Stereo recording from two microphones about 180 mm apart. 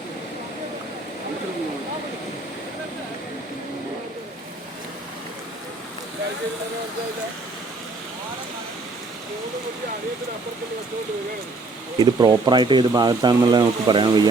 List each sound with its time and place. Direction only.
11.9 s speech: 25° right (ahead or behind)